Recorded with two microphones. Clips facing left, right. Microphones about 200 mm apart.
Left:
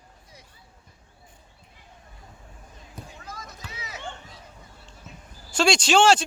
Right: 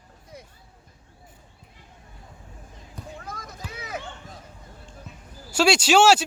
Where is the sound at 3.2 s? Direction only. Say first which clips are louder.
Right 3 dB; 55° right (ahead or behind).